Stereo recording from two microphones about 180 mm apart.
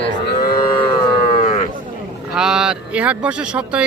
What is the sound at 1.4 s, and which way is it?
Livestock, 40° left (ahead or behind).